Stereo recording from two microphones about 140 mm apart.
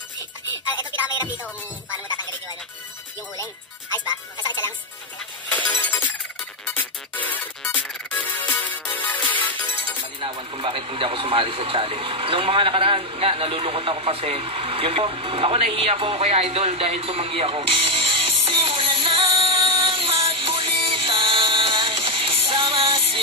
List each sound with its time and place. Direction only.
5.5 s music: 10° left (ahead or behind)
10.2 s radio: 40° right (ahead or behind)